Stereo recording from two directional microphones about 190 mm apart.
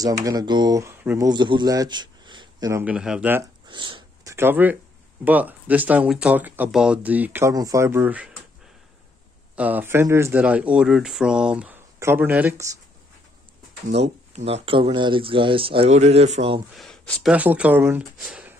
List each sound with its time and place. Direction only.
0.0 s speech: 20° right (ahead or behind)
2.8 s speech: 5° right (ahead or behind)
3.6 s a sound: 25° right (ahead or behind)
5.2 s speech: 10° right (ahead or behind)
9.6 s speech: 10° right (ahead or behind)
13.9 s speech: 35° right (ahead or behind)
16.7 s speech: centre (ahead or behind)
17.3 s speech: 5° right (ahead or behind)